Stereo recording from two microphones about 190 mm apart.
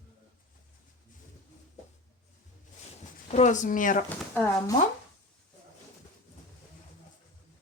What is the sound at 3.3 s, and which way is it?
Speech, 35° left (ahead or behind).